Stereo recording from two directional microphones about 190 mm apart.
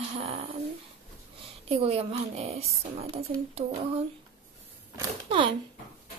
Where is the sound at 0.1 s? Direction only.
30° right (ahead or behind).